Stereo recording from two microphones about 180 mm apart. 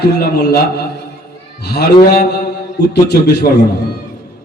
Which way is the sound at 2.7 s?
65° left (ahead or behind).